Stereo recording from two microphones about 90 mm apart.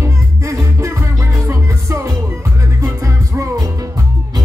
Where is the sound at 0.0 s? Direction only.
30° right (ahead or behind).